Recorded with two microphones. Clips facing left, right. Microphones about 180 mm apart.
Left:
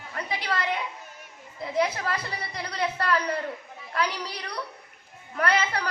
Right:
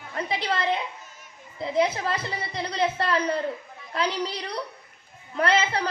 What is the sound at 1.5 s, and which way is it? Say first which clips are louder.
A woman's voice: right 3 dB; 25° right (ahead or behind).